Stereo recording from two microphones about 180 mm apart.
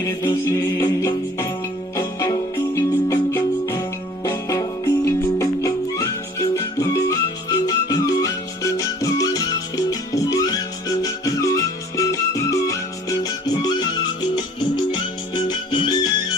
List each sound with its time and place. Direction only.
0.0 s music: 20° left (ahead or behind)
15.4 s music: 25° left (ahead or behind)